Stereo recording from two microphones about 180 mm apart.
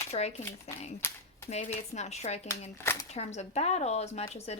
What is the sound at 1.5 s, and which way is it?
A woman's voice, 40° left (ahead or behind).